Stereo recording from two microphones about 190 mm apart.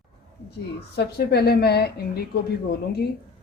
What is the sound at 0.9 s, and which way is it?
A woman's voice, 60° left (ahead or behind).